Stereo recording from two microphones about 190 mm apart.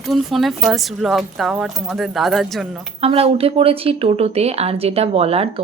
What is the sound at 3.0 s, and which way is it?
A woman's voice, 30° right (ahead or behind).